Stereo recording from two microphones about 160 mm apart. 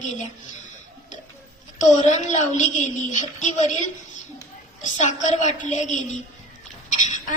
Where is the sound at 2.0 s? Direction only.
45° left (ahead or behind).